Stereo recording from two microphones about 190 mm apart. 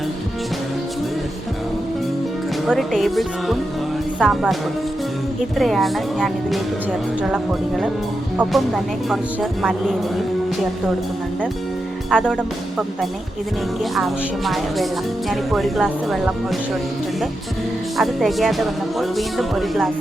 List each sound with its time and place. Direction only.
2.6 s speech: centre (ahead or behind)
5.5 s speech: centre (ahead or behind)
12.1 s speech: 5° right (ahead or behind)
17.9 s speech: centre (ahead or behind)